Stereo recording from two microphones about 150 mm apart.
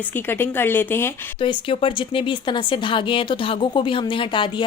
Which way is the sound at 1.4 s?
35° left (ahead or behind).